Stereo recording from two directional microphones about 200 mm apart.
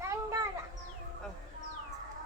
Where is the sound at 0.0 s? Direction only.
15° right (ahead or behind).